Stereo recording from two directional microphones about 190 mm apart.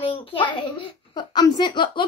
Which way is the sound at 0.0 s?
30° left (ahead or behind).